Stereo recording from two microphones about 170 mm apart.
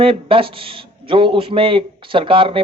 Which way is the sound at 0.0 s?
30° right (ahead or behind).